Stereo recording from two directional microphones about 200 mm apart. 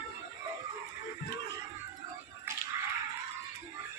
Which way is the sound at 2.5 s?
10° right (ahead or behind).